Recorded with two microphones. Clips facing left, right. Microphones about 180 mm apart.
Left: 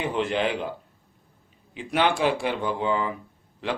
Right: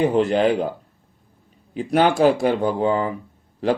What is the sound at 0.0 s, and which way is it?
Speech, 40° right (ahead or behind).